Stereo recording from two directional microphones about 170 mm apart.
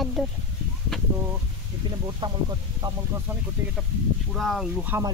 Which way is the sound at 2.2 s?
30° right (ahead or behind).